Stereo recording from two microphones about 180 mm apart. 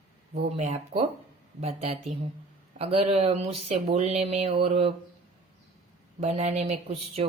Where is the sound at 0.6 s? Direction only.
40° right (ahead or behind).